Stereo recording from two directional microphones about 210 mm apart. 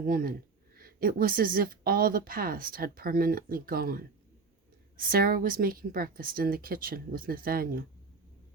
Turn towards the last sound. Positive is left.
turn(degrees=-45)  # may be behind; listen again after turning